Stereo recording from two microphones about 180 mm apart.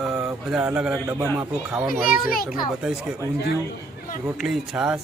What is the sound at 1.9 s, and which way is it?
Speech, 50° left (ahead or behind).